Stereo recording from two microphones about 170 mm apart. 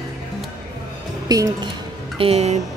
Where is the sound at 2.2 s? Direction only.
35° right (ahead or behind).